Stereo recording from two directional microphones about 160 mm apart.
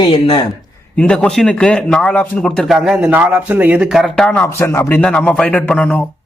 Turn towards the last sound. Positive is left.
turn(degrees=10)  # may be behind; listen again after turning